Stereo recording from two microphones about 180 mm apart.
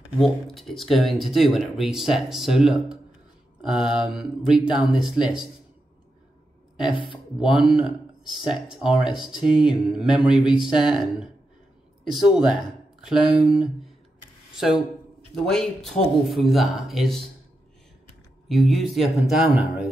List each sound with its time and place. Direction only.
0.2 s speech: centre (ahead or behind)
6.9 s speech: 30° left (ahead or behind)
7.3 s speech: 5° right (ahead or behind)
14.5 s a sound: 5° right (ahead or behind)
15.4 s speech: centre (ahead or behind)
18.5 s speech: centre (ahead or behind)